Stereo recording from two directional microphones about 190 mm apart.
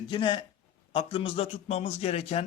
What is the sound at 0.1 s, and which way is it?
A man's voice, 25° left (ahead or behind).